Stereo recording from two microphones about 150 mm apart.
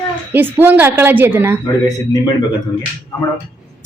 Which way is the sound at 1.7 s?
25° left (ahead or behind).